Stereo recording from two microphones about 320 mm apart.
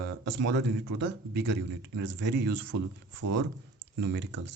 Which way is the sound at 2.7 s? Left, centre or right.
Right.